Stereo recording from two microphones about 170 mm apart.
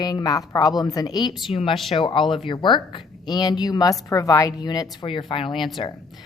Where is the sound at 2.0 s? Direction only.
30° left (ahead or behind).